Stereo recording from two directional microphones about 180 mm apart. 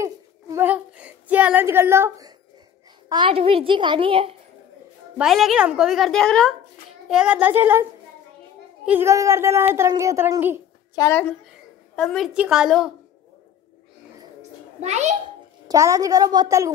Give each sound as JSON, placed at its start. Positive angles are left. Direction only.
{"t": 0.0, "sound": "a sound", "side_deg": -15}
{"t": 3.1, "sound": "a woman's voice", "side_deg": -30}
{"t": 5.1, "sound": "a woman's voice", "side_deg": 0}
{"t": 8.8, "sound": "a woman's voice", "side_deg": -10}
{"t": 11.0, "sound": "a woman's voice", "side_deg": 10}
{"t": 14.8, "sound": "a child's voice", "side_deg": -40}
{"t": 15.7, "sound": "a woman's voice", "side_deg": -20}